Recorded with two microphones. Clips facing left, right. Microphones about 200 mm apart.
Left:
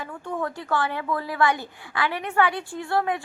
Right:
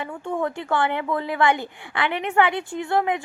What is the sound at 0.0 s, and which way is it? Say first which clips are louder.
A woman's voice: right 4 dB; 25° right (ahead or behind).